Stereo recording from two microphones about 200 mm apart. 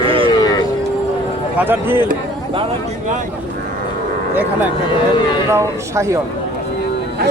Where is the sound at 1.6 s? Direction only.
10° right (ahead or behind).